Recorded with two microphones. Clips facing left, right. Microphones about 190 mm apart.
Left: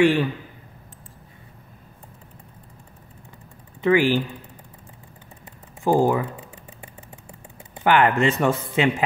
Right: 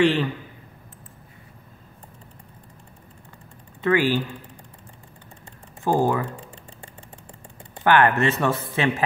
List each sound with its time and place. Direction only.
0.0 s speech: 10° left (ahead or behind)
3.8 s speech: 15° left (ahead or behind)
5.9 s a sound: 10° left (ahead or behind)
7.7 s speech: 15° left (ahead or behind)